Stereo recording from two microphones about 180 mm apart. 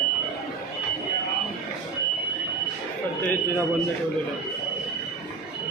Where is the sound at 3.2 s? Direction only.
10° left (ahead or behind).